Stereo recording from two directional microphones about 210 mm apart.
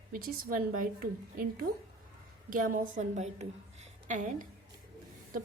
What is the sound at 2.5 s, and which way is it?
A woman's voice, 40° right (ahead or behind).